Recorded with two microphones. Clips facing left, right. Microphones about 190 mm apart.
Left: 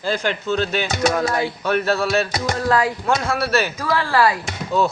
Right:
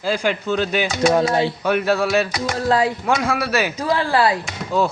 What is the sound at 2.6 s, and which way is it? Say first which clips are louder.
Speech: right 1 dB; 25° right (ahead or behind).